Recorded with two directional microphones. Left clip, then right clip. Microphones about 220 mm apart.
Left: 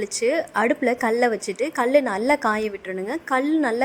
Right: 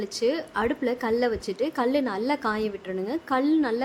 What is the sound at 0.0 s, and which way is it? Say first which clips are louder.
A woman's voice: left 4 dB; 20° left (ahead or behind).